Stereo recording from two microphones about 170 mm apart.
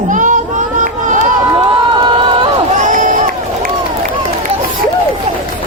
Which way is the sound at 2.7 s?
50° right (ahead or behind).